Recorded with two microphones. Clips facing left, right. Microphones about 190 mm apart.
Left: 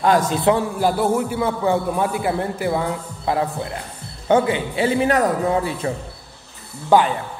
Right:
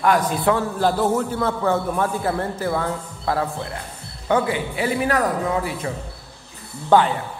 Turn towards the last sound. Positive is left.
turn(degrees=10)  # may be behind; listen again after turning